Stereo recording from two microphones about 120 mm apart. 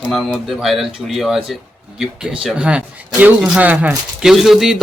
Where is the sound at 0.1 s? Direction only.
Centre (ahead or behind).